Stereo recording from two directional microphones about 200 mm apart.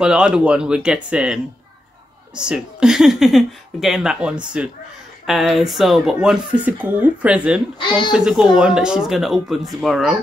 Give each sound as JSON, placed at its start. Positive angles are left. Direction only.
{"t": 0.0, "sound": "speech", "side_deg": -5}
{"t": 7.8, "sound": "speech", "side_deg": 25}
{"t": 8.1, "sound": "speech", "side_deg": 0}